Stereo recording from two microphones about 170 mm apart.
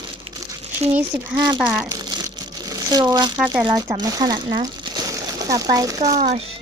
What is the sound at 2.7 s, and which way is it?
Speech, 20° right (ahead or behind).